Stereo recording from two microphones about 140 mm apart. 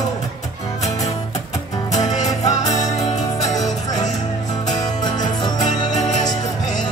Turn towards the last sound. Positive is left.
turn(degrees=30)  # may be behind; listen again after turning